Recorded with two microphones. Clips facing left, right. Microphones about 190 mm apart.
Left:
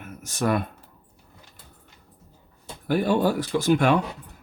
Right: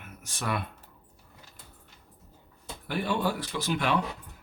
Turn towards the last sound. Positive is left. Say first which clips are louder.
# left 8 dB
turn(degrees=45)  # may be behind; listen again after turning